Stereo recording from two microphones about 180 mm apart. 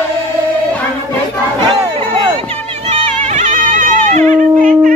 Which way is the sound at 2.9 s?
40° right (ahead or behind).